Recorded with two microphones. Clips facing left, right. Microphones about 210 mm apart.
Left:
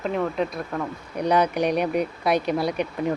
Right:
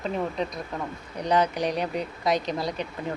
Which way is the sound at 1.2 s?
10° left (ahead or behind).